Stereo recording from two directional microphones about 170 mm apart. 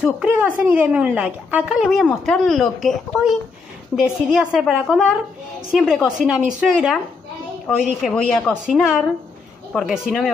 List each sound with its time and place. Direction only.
0.0 s a woman's voice: 10° right (ahead or behind)